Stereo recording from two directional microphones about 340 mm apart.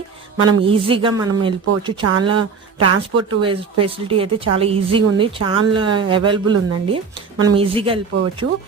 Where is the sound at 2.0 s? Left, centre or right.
Right.